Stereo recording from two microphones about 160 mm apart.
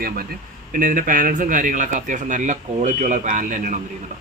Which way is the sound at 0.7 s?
55° right (ahead or behind).